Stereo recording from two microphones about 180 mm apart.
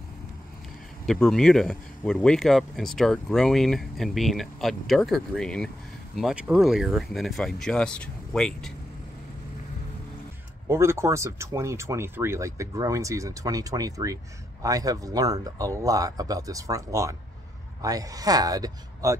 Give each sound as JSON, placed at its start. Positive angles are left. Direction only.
{"t": 1.0, "sound": "speech", "side_deg": 0}
{"t": 10.7, "sound": "speech", "side_deg": -15}